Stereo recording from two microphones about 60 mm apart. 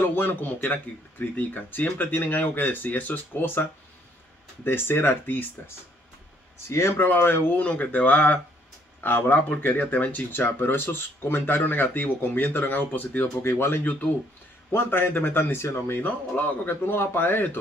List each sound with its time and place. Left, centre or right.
0.0 s speech: left
4.6 s speech: left
6.7 s speech: left
7.1 s speech: left
7.6 s speech: left
13.4 s speech: left